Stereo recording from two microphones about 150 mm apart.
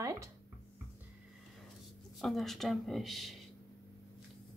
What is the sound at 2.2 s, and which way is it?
A woman's voice, centre (ahead or behind).